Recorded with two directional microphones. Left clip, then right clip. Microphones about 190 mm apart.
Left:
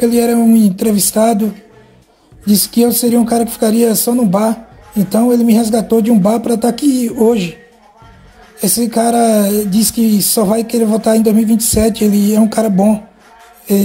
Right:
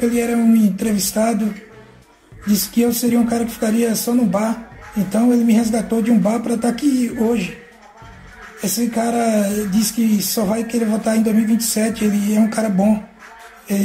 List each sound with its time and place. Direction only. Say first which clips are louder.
0.0 s speech: left 6 dB; 45° left (ahead or behind)
2.5 s speech: left 6 dB; 45° left (ahead or behind)
8.5 s speech: left 6 dB; 45° left (ahead or behind)